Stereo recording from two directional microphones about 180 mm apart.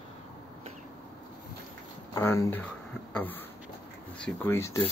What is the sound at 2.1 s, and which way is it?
Speech, 15° left (ahead or behind).